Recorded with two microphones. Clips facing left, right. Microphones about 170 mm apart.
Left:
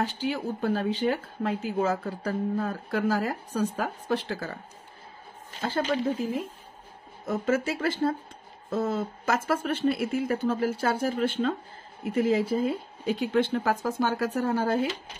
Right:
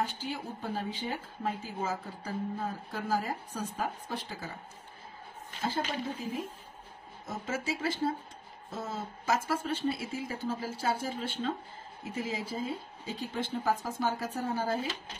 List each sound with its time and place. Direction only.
0.0 s speech: 75° left (ahead or behind)
7.2 s speech: 60° left (ahead or behind)